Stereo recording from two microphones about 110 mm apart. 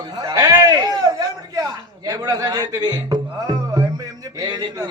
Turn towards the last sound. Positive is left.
turn(degrees=-35)  # may be behind; listen again after turning